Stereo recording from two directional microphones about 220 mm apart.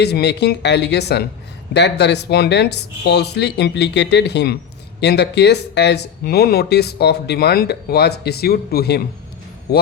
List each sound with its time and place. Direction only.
0.0 s speech: 50° left (ahead or behind)